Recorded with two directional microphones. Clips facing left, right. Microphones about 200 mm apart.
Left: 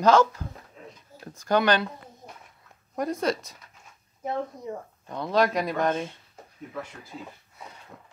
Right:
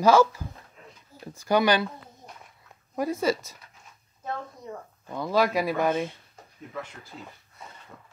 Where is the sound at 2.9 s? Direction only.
5° right (ahead or behind).